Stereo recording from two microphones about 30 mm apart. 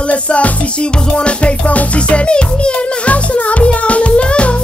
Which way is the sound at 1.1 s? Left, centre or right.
Left.